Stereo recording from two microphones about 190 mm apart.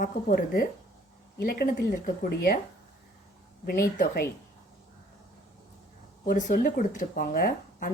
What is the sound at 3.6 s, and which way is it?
Speech, 50° left (ahead or behind).